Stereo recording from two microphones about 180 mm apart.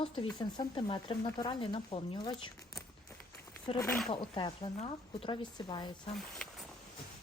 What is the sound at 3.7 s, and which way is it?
Speech, 30° left (ahead or behind).